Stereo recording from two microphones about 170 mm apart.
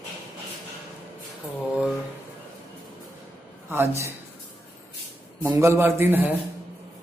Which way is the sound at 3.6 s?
15° right (ahead or behind).